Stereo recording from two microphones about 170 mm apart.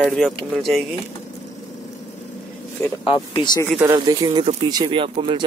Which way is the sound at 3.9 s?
20° right (ahead or behind).